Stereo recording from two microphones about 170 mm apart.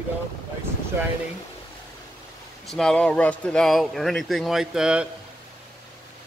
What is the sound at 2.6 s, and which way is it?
Speech, 5° left (ahead or behind).